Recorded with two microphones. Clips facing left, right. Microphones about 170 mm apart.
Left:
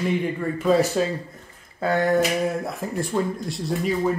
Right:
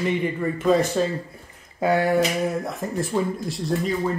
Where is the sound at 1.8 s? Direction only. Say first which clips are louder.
Right 1 dB; 10° right (ahead or behind).